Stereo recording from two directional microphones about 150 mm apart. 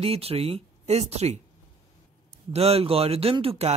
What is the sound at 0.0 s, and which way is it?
Speech, 40° right (ahead or behind).